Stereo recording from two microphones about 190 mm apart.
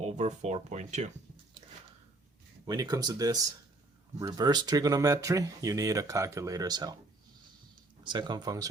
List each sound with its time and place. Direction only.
0.0 s speech: 35° right (ahead or behind)
2.6 s speech: 20° right (ahead or behind)
8.0 s speech: 25° right (ahead or behind)